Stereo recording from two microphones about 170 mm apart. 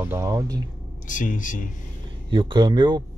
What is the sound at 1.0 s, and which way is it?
Speech, 50° left (ahead or behind).